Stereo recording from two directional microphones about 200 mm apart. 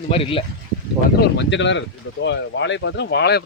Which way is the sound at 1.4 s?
65° left (ahead or behind).